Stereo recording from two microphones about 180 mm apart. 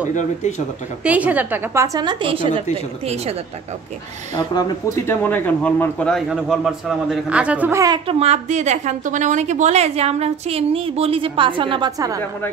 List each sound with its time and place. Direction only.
0.1 s speech: 40° left (ahead or behind)
1.0 s a woman's voice: 10° right (ahead or behind); by 2.6 s 30° right (ahead or behind)
4.4 s speech: 25° left (ahead or behind); by 7.8 s 10° right (ahead or behind)
7.8 s a woman's voice: 25° right (ahead or behind)